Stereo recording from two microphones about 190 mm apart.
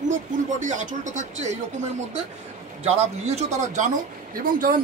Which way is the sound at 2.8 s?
35° right (ahead or behind).